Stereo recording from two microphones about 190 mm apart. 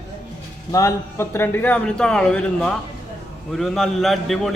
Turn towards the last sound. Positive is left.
turn(degrees=0)  # may be behind; listen again after turning